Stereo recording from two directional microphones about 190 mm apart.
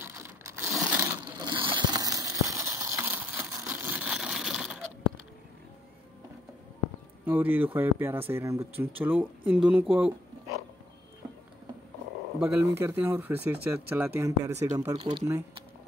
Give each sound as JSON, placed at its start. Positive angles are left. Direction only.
{"t": 0.0, "sound": "crushing", "side_deg": -15}
{"t": 1.4, "sound": "a sound", "side_deg": -25}
{"t": 7.2, "sound": "speech", "side_deg": -10}
{"t": 12.4, "sound": "speech", "side_deg": -10}